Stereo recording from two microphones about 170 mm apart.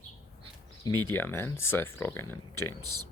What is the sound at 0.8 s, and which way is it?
Speech, 15° left (ahead or behind).